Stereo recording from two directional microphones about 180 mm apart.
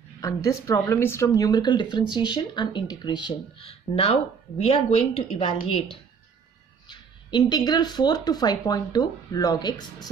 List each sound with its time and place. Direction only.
0.2 s a woman's voice: 15° left (ahead or behind)